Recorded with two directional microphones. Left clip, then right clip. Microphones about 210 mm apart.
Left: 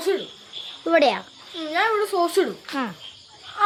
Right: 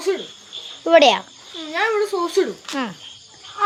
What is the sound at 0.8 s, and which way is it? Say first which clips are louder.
Speech: right 6 dB; 10° right (ahead or behind).